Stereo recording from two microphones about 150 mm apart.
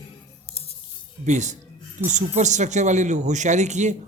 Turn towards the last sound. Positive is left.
turn(degrees=-50)  # may be behind; listen again after turning